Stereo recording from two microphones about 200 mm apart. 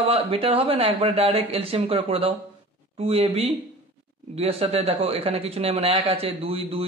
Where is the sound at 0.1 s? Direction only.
30° right (ahead or behind).